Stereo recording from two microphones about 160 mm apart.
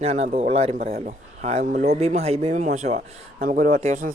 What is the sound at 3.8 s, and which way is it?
Speech, 45° right (ahead or behind).